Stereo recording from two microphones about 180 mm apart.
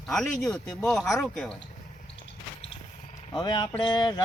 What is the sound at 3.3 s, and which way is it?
Mantra, 25° left (ahead or behind).